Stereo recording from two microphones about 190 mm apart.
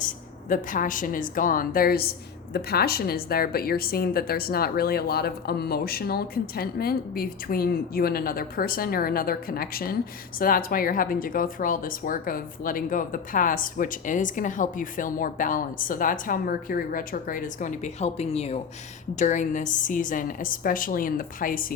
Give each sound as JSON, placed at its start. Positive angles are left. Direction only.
{"t": 0.0, "sound": "a woman's voice", "side_deg": 45}